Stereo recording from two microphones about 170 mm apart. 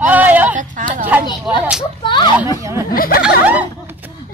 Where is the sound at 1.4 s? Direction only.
5° right (ahead or behind).